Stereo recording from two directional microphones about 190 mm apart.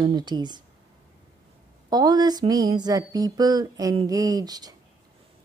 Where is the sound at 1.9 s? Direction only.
20° right (ahead or behind).